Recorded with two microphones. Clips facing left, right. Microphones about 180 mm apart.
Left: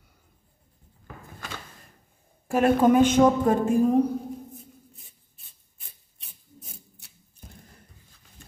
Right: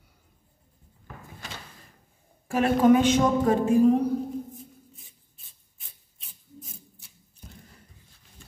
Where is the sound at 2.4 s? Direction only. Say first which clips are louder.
Left 1 dB; 45° left (ahead or behind).